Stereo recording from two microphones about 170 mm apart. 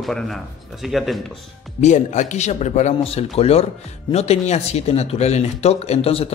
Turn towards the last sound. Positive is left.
turn(degrees=35)  # may be behind; listen again after turning